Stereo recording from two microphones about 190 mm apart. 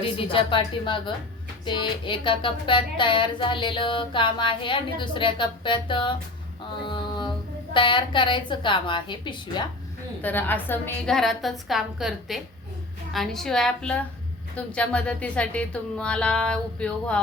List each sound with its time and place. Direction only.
0.0 s a sound: 30° left (ahead or behind)
6.8 s a woman's voice: 25° left (ahead or behind)
10.2 s speech: 10° left (ahead or behind)